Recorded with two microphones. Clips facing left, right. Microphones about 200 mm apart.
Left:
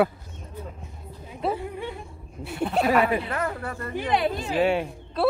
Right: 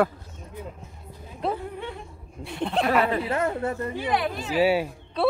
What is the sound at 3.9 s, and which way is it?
Speech, 25° left (ahead or behind).